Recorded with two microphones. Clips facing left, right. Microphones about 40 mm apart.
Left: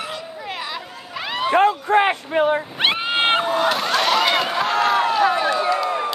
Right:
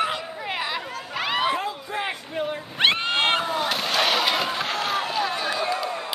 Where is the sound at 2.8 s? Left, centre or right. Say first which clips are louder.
Right 3 dB; centre.